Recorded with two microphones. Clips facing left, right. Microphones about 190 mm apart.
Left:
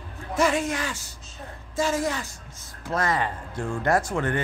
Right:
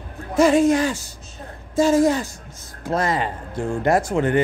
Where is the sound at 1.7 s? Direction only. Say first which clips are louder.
Right 9 dB; 35° right (ahead or behind).